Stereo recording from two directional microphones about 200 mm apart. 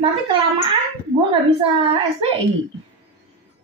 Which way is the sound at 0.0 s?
25° right (ahead or behind).